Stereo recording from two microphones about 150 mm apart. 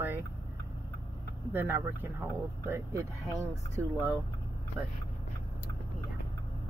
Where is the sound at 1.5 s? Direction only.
15° right (ahead or behind).